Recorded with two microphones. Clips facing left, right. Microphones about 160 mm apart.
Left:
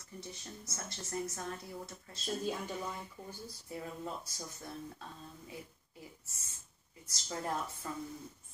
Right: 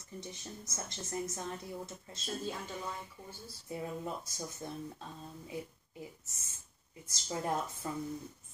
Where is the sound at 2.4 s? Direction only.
15° left (ahead or behind).